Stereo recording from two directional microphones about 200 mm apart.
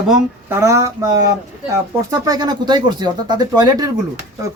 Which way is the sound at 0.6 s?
15° right (ahead or behind).